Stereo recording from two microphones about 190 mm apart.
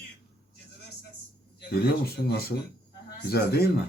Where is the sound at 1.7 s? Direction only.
55° left (ahead or behind).